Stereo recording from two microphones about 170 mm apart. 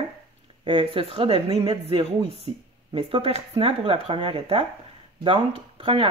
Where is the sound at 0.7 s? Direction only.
30° right (ahead or behind).